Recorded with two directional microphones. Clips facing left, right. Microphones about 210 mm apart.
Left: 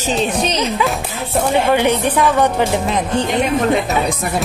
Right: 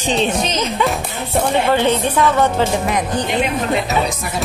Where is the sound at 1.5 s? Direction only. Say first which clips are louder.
Left 2 dB; 15° left (ahead or behind).